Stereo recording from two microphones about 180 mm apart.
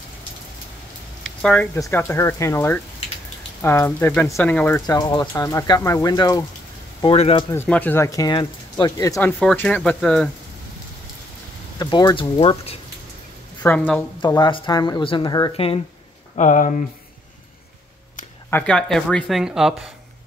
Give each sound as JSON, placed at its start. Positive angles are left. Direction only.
{"t": 1.2, "sound": "a sound", "side_deg": 5}
{"t": 1.8, "sound": "speech", "side_deg": 15}
{"t": 4.8, "sound": "speech", "side_deg": 25}
{"t": 7.0, "sound": "speech", "side_deg": 30}
{"t": 7.5, "sound": "speech", "side_deg": 10}
{"t": 9.4, "sound": "speech", "side_deg": 5}
{"t": 11.8, "sound": "speech", "side_deg": 20}
{"t": 13.6, "sound": "speech", "side_deg": 10}
{"t": 14.2, "sound": "speech", "side_deg": 25}
{"t": 16.3, "sound": "speech", "side_deg": 45}
{"t": 18.5, "sound": "speech", "side_deg": 5}